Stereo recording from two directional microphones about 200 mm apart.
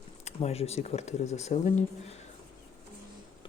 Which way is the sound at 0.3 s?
30° left (ahead or behind).